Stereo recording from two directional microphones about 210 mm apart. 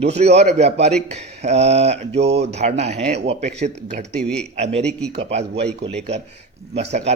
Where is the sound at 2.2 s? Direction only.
55° right (ahead or behind).